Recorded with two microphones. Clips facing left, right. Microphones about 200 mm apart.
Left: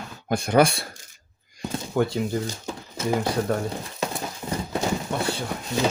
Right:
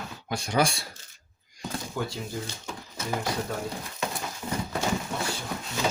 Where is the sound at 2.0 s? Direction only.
60° left (ahead or behind).